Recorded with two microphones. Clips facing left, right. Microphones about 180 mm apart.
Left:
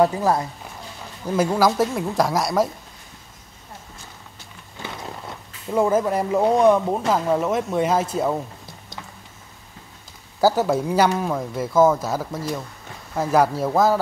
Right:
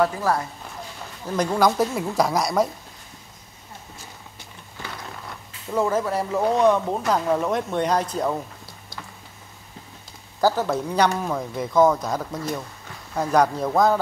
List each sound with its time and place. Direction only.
0.0 s speech: 20° left (ahead or behind)
1.3 s speech: 5° left (ahead or behind)
5.9 s speech: 15° left (ahead or behind)
10.4 s speech: 10° left (ahead or behind)